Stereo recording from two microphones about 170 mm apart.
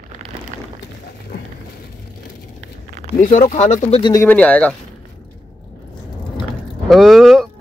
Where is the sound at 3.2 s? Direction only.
45° left (ahead or behind).